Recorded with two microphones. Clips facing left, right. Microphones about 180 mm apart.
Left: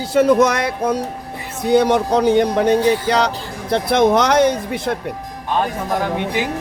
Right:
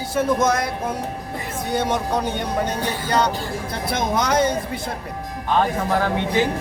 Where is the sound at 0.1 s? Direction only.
80° left.